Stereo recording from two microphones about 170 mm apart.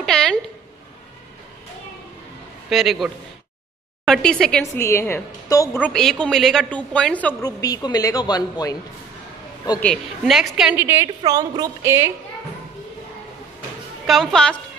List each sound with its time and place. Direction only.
0.0 s a sound: 5° left (ahead or behind)
2.7 s a woman's voice: centre (ahead or behind)
4.7 s a woman's voice: 15° left (ahead or behind)
5.8 s a woman's voice: 5° left (ahead or behind)
7.4 s speech: 20° left (ahead or behind)
9.8 s a woman's voice: 5° left (ahead or behind); by 12.1 s 15° right (ahead or behind)
14.0 s a woman's voice: centre (ahead or behind)